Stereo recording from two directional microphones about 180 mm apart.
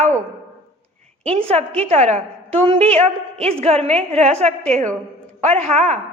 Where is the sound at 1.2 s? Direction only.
30° right (ahead or behind).